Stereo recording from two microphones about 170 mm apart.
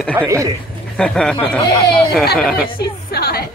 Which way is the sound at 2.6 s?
60° left (ahead or behind).